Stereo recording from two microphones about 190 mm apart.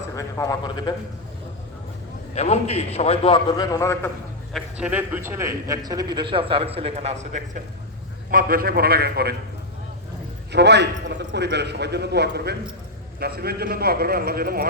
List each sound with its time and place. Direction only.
0.1 s a man's voice: 15° left (ahead or behind)
2.3 s a man's voice: 35° left (ahead or behind); by 4.1 s 15° left (ahead or behind)
4.5 s a man's voice: 5° right (ahead or behind); by 7.6 s 40° right (ahead or behind)
8.3 s a man's voice: 50° right (ahead or behind)
10.5 s a man's voice: 60° right (ahead or behind)